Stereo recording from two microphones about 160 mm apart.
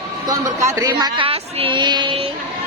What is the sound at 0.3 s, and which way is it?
A woman's voice, 20° right (ahead or behind).